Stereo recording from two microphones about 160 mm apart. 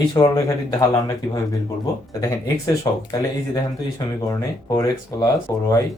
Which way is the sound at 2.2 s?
20° left (ahead or behind).